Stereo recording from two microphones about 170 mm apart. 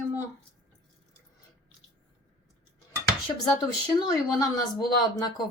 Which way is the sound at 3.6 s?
25° left (ahead or behind).